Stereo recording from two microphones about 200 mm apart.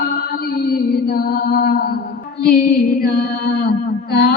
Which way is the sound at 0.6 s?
50° left (ahead or behind).